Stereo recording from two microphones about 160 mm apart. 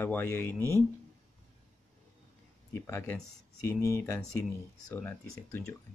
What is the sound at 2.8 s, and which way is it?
Speech, 15° left (ahead or behind).